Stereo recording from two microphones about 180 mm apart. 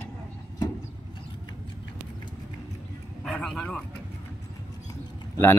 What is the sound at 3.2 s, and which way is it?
Speech, 5° left (ahead or behind).